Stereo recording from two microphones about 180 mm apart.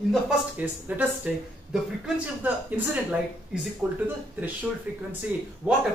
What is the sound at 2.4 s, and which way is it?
Speech, 10° right (ahead or behind).